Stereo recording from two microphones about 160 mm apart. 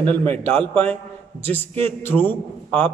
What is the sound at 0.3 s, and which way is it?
A man's voice, 10° left (ahead or behind).